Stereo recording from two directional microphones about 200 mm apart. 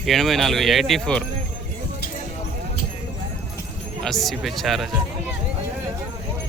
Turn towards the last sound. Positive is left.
turn(degrees=0)  # may be behind; listen again after turning